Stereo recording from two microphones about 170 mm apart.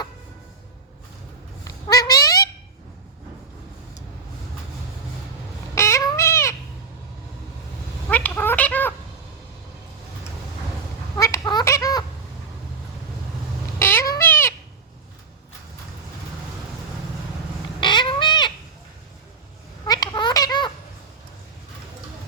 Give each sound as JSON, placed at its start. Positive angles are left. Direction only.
{"t": 1.6, "sound": "cat", "side_deg": 20}
{"t": 5.7, "sound": "cat", "side_deg": 15}
{"t": 8.1, "sound": "cat", "side_deg": 10}
{"t": 11.2, "sound": "quack", "side_deg": 20}
{"t": 13.7, "sound": "cat", "side_deg": 15}
{"t": 17.7, "sound": "cat", "side_deg": 25}
{"t": 19.9, "sound": "a sound", "side_deg": 25}